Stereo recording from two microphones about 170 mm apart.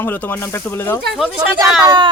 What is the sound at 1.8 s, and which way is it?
Speech, 25° right (ahead or behind).